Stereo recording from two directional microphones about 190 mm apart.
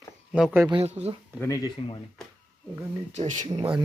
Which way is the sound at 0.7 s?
30° right (ahead or behind).